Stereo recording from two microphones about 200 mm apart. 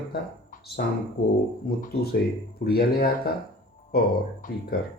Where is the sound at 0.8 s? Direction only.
55° left (ahead or behind).